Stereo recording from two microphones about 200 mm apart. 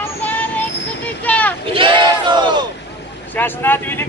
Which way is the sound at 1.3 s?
10° left (ahead or behind).